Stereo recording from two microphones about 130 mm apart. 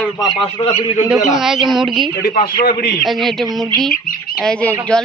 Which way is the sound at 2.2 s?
90° left.